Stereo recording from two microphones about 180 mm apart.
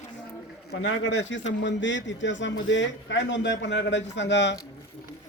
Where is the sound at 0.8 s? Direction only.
85° left.